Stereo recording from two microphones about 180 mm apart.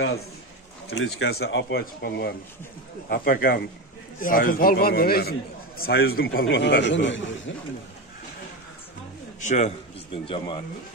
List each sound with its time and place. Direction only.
0.8 s speech: 80° left
3.1 s a man's voice: 55° left (ahead or behind)
6.5 s a man's voice: 65° left (ahead or behind); by 7.5 s 90° left
9.4 s a man's voice: 40° left (ahead or behind)
10.1 s speech: 30° left (ahead or behind)